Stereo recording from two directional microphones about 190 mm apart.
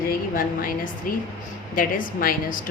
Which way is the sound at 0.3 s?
50° left (ahead or behind).